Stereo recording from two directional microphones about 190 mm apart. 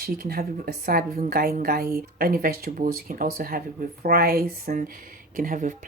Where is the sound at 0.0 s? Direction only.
50° right (ahead or behind).